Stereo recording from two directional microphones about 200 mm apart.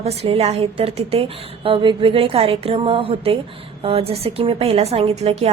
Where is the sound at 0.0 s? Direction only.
30° right (ahead or behind).